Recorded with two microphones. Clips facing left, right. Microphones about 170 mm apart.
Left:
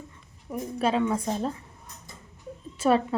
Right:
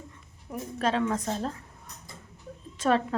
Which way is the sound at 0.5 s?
10° left (ahead or behind).